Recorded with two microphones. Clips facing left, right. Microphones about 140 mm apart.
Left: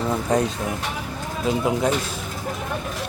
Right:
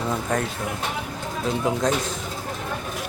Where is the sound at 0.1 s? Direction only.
15° left (ahead or behind).